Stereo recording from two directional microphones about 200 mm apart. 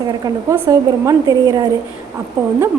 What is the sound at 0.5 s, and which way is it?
A woman's voice, 15° right (ahead or behind).